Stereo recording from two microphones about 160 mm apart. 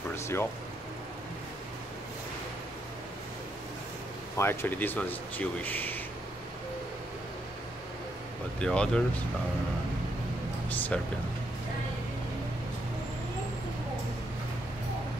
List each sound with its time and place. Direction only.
0.1 s a sound: 15° left (ahead or behind)
4.4 s speech: 15° left (ahead or behind)
8.5 s speech: 5° left (ahead or behind)
10.7 s speech: 10° left (ahead or behind)